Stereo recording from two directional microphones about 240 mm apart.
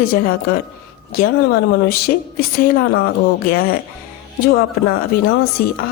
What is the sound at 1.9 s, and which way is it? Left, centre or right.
A woman's voice, left.